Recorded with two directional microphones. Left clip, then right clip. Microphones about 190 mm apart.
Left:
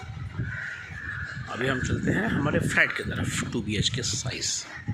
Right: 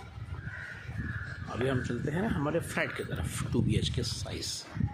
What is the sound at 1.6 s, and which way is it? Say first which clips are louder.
Speech: left 5 dB; 5° right (ahead or behind).